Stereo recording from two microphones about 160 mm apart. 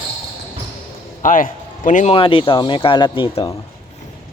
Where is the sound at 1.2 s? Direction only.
55° left (ahead or behind).